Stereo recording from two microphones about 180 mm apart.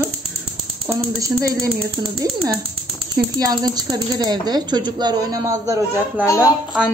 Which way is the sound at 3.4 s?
20° right (ahead or behind).